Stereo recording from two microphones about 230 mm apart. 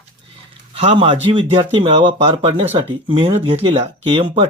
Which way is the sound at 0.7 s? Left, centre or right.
Right.